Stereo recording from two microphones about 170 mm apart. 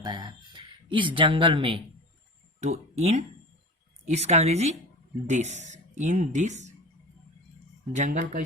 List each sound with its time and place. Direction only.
0.0 s speech: 25° right (ahead or behind); by 6.7 s 45° right (ahead or behind)
7.9 s speech: 45° right (ahead or behind)